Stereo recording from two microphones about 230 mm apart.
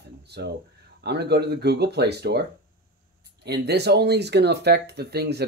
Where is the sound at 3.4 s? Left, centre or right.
Right.